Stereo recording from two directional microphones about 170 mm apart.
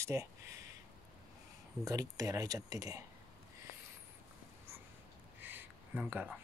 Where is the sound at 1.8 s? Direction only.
20° right (ahead or behind).